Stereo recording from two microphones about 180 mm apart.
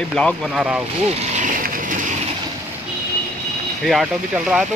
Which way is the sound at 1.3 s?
45° right (ahead or behind).